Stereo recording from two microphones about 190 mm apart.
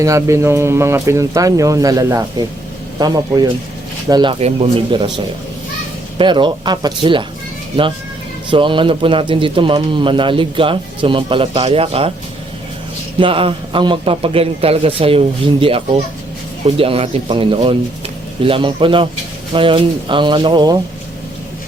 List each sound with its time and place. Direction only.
0.0 s speech: 15° right (ahead or behind); by 12.1 s 30° right (ahead or behind)
13.1 s speech: 25° right (ahead or behind)